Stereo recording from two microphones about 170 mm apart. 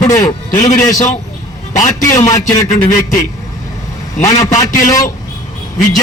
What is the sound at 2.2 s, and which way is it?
Speech, 15° left (ahead or behind).